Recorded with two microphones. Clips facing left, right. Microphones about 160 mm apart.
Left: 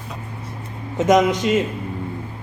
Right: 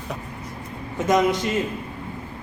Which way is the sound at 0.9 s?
20° left (ahead or behind).